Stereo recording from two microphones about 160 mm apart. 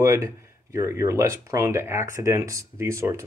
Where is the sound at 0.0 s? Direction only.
20° right (ahead or behind).